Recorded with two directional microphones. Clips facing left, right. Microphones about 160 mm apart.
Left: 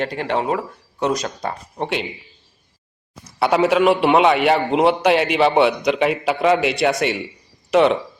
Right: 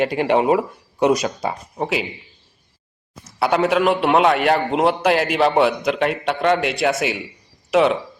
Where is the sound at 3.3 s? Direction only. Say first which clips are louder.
Left 2 dB; centre (ahead or behind).